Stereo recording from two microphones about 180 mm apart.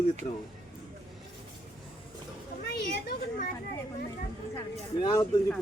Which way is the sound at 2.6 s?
65° left (ahead or behind).